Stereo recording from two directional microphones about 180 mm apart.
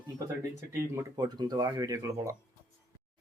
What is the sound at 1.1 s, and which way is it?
Speech, 20° right (ahead or behind).